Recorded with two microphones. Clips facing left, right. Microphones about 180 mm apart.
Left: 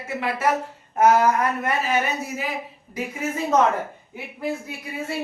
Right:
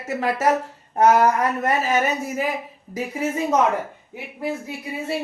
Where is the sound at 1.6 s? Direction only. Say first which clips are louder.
Right 3 dB; 40° right (ahead or behind).